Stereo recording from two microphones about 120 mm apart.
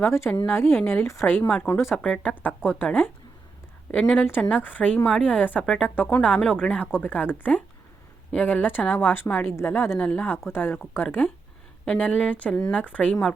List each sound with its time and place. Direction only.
0.0 s a woman's voice: 25° left (ahead or behind)
2.0 s a woman's voice: 10° left (ahead or behind)